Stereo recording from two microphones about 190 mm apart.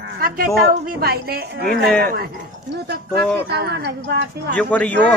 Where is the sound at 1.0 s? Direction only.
55° right (ahead or behind).